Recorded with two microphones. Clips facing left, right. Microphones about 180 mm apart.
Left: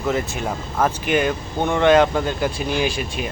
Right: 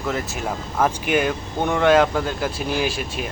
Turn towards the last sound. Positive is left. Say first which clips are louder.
# left 2 dB
turn(degrees=0)  # may be behind; listen again after turning